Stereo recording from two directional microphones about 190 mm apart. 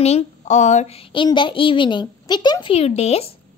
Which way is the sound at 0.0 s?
35° left (ahead or behind).